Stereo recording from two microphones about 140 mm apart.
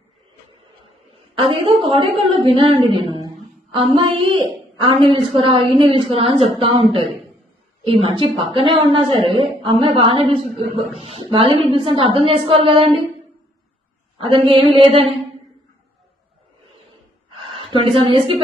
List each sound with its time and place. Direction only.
1.3 s a woman's voice: 40° right (ahead or behind)
14.1 s a woman's voice: 40° right (ahead or behind)
17.4 s a sound: 40° right (ahead or behind)